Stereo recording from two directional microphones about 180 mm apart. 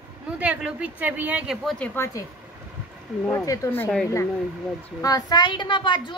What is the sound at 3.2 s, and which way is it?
Speech, 15° left (ahead or behind).